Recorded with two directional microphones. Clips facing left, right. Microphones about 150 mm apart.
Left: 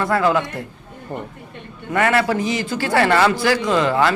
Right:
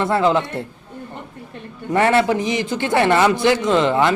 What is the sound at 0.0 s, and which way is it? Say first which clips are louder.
Speech: right 1 dB; 25° right (ahead or behind).